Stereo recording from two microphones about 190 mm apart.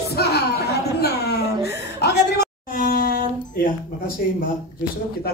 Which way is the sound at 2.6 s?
50° left (ahead or behind).